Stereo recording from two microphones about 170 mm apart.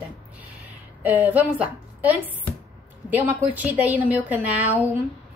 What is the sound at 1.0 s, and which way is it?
A woman's voice, 10° right (ahead or behind).